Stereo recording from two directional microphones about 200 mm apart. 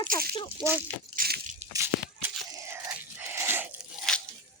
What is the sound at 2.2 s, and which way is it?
Tearing, 10° right (ahead or behind).